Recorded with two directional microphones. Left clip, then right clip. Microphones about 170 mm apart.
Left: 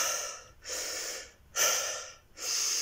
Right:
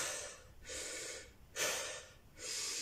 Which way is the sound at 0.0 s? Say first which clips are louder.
Left 10 dB; 30° right (ahead or behind).